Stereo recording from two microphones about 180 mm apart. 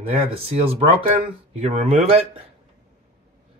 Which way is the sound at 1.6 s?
35° right (ahead or behind).